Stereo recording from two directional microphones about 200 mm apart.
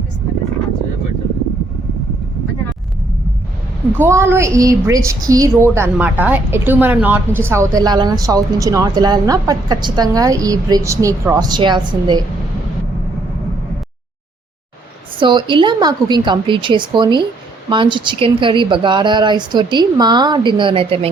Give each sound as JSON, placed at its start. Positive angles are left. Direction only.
{"t": 3.9, "sound": "a woman's voice", "side_deg": -10}
{"t": 15.2, "sound": "speech", "side_deg": -25}